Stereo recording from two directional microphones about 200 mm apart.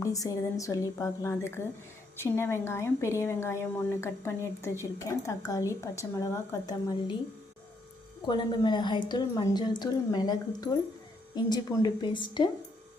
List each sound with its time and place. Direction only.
0.0 s a woman's voice: 15° left (ahead or behind)
8.3 s a woman's voice: 20° left (ahead or behind)